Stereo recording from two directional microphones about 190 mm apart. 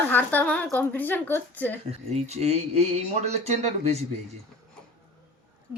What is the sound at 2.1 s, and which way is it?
Speech, 35° right (ahead or behind).